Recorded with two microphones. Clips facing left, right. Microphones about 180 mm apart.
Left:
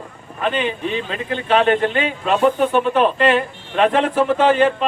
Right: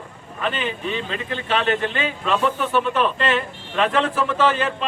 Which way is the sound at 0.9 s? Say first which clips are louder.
Left 3 dB; 40° left (ahead or behind).